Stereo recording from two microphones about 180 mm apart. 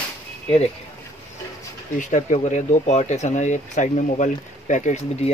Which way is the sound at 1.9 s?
40° left (ahead or behind).